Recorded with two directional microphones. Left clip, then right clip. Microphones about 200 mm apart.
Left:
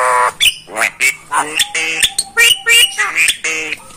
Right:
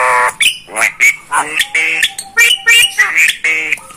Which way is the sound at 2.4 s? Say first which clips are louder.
Right 2 dB; 25° left (ahead or behind).